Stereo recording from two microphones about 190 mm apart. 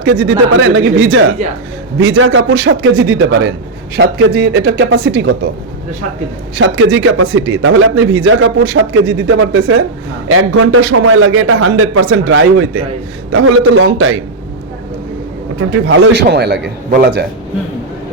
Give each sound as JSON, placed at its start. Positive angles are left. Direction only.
{"t": 0.0, "sound": "a man's voice", "side_deg": -65}
{"t": 1.4, "sound": "a man's voice", "side_deg": -35}
{"t": 2.0, "sound": "a man's voice", "side_deg": -80}
{"t": 3.9, "sound": "a man's voice", "side_deg": -60}
{"t": 6.6, "sound": "a man's voice", "side_deg": -90}
{"t": 15.5, "sound": "a man's voice", "side_deg": -85}